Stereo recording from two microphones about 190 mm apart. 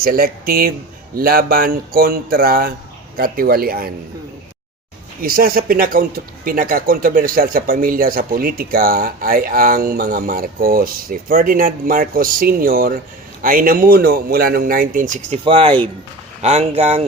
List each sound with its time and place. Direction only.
0.0 s speech: 50° right (ahead or behind)
5.2 s speech: 50° right (ahead or behind)
15.4 s speech: 30° right (ahead or behind)